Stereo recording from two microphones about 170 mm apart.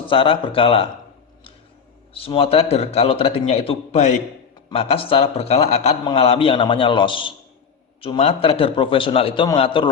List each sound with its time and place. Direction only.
0.1 s a man's voice: 30° left (ahead or behind)
2.1 s a man's voice: 35° left (ahead or behind)